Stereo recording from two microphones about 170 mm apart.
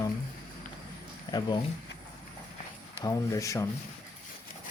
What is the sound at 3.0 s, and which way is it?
Speech, 20° left (ahead or behind).